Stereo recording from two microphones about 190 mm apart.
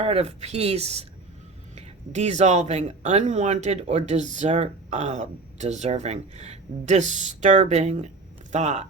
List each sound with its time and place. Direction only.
0.0 s speech: 30° right (ahead or behind)